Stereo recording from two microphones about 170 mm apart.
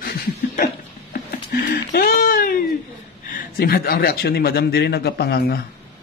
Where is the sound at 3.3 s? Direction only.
55° left (ahead or behind).